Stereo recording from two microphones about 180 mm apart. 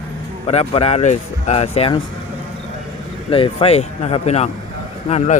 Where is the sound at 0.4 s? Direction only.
30° left (ahead or behind).